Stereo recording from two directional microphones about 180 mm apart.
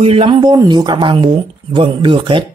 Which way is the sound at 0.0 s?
35° right (ahead or behind).